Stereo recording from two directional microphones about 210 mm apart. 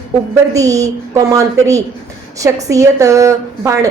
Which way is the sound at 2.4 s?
15° right (ahead or behind).